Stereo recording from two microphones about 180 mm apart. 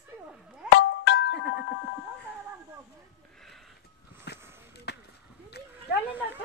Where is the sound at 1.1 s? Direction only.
70° left (ahead or behind).